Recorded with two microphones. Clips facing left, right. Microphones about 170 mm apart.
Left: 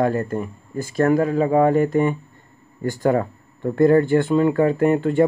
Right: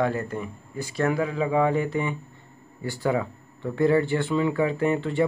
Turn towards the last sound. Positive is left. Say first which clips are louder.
# left 6 dB
turn(degrees=50)  # may be behind; listen again after turning